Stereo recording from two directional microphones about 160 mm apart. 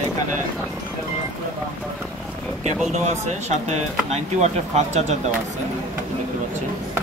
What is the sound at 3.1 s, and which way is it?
Speech, 45° right (ahead or behind).